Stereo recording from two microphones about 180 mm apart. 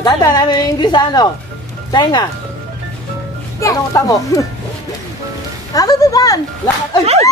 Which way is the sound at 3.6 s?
20° left (ahead or behind).